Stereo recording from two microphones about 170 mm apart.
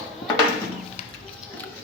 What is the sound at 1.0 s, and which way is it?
Music, 35° left (ahead or behind).